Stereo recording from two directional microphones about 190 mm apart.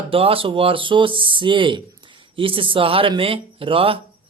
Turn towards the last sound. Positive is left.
turn(degrees=-30)  # may be behind; listen again after turning